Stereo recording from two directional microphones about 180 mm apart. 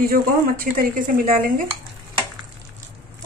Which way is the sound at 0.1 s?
50° right (ahead or behind).